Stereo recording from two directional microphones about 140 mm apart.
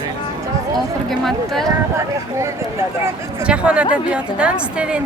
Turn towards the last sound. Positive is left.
turn(degrees=-5)  # may be behind; listen again after turning